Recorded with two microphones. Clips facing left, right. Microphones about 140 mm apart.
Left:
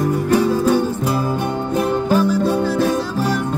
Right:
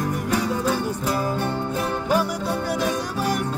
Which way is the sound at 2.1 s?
15° right (ahead or behind).